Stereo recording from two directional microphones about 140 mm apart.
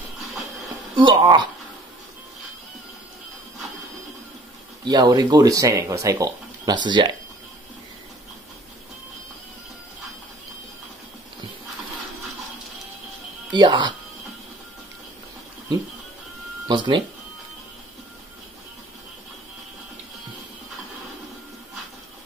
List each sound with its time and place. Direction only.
0.9 s speech: 35° right (ahead or behind)
4.8 s speech: 30° right (ahead or behind)
13.5 s speech: 35° right (ahead or behind)
16.6 s speech: 35° right (ahead or behind)